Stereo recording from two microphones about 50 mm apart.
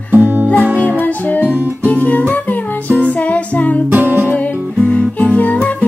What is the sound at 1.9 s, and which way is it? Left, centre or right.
Music, left.